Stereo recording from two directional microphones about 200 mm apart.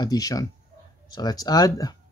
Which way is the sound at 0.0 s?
20° left (ahead or behind).